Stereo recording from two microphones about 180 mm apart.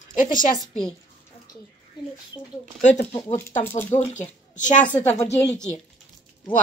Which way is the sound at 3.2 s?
15° left (ahead or behind).